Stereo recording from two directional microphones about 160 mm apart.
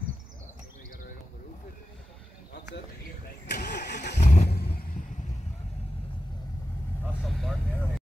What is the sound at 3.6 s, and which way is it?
Vehicle, 90° left.